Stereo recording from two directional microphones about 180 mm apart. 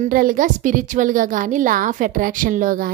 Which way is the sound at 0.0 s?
50° right (ahead or behind).